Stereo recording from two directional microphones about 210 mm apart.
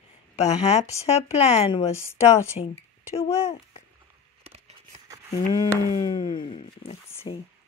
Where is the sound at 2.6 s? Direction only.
30° left (ahead or behind).